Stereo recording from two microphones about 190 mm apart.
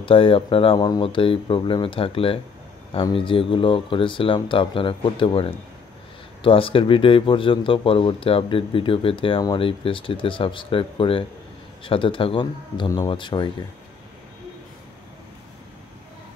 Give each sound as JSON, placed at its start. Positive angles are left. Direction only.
{"t": 0.0, "sound": "speech", "side_deg": 30}